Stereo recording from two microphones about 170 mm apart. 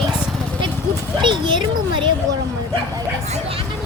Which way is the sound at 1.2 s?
30° right (ahead or behind).